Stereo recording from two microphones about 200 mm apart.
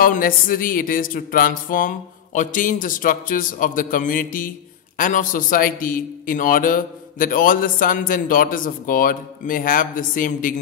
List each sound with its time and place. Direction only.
0.0 s a man's voice: 45° left (ahead or behind)